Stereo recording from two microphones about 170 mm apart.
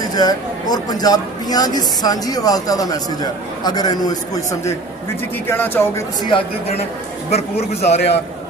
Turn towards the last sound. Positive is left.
turn(degrees=40)  # may be behind; listen again after turning